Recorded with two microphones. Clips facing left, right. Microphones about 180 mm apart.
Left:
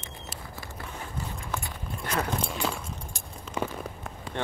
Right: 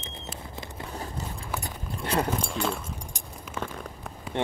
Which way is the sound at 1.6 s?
30° right (ahead or behind).